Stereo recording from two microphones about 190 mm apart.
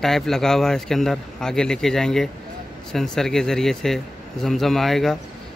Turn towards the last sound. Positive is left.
turn(degrees=0)  # may be behind; listen again after turning